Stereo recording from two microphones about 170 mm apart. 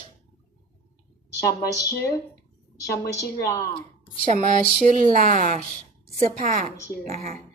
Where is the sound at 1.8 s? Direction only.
20° left (ahead or behind).